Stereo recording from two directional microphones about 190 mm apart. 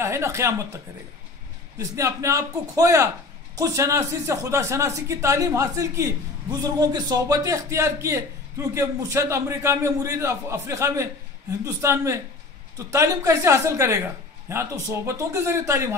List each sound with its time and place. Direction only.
0.0 s speech: 15° right (ahead or behind)
1.8 s speech: 15° right (ahead or behind)